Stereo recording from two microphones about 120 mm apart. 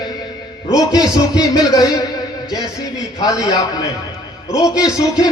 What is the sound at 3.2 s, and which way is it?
Speech, 30° left (ahead or behind).